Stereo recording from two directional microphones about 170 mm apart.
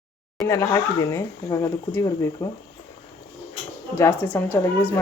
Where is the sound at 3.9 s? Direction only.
15° left (ahead or behind).